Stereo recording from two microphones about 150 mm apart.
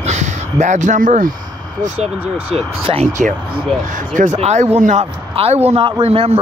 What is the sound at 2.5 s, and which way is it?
Speech, 40° right (ahead or behind).